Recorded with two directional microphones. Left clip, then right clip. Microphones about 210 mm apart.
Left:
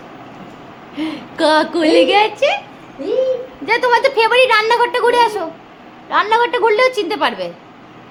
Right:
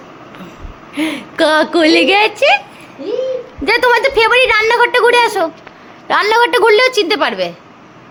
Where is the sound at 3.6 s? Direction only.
25° right (ahead or behind).